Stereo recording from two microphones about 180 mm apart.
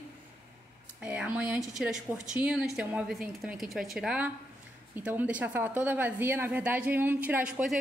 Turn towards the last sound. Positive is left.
turn(degrees=-5)  # may be behind; listen again after turning